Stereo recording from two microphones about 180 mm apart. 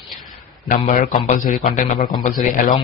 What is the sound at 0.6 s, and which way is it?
Speech, 45° left (ahead or behind).